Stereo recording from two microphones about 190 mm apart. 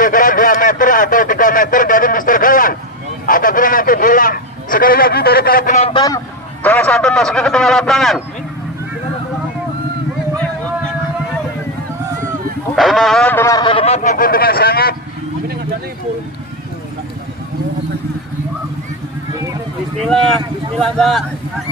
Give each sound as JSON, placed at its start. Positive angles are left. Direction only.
{"t": 0.0, "sound": "a sound", "side_deg": 45}
{"t": 3.3, "sound": "a man's voice", "side_deg": 45}
{"t": 5.9, "sound": "a man's voice", "side_deg": 15}
{"t": 12.7, "sound": "speech", "side_deg": 0}
{"t": 20.0, "sound": "a man's voice", "side_deg": 0}